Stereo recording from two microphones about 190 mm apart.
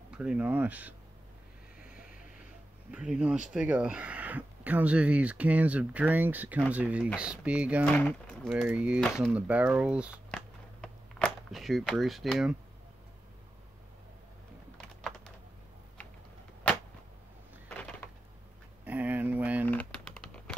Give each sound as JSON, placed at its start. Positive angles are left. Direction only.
{"t": 0.1, "sound": "speech", "side_deg": -5}
{"t": 1.8, "sound": "vehicle", "side_deg": -5}
{"t": 2.9, "sound": "speech", "side_deg": -5}
{"t": 7.8, "sound": "speech", "side_deg": 5}
{"t": 8.5, "sound": "speech", "side_deg": -5}
{"t": 10.3, "sound": "walk", "side_deg": 5}
{"t": 14.8, "sound": "typing", "side_deg": 5}
{"t": 17.6, "sound": "a sound", "side_deg": 5}
{"t": 18.9, "sound": "a sound", "side_deg": -10}
{"t": 19.7, "sound": "a sound", "side_deg": 5}